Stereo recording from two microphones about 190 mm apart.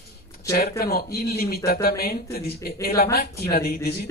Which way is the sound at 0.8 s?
55° left (ahead or behind).